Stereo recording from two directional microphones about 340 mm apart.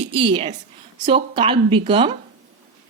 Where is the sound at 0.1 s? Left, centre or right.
Centre.